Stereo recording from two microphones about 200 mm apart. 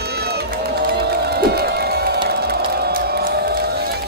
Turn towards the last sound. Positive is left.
turn(degrees=-50)  # may be behind; listen again after turning